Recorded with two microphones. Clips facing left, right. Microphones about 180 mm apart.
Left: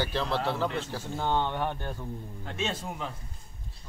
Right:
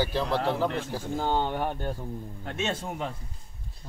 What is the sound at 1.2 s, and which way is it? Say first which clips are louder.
Speech: right 1 dB; 35° right (ahead or behind).